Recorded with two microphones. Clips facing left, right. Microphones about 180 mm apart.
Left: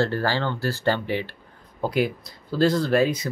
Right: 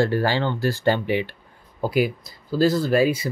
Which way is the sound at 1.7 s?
5° right (ahead or behind).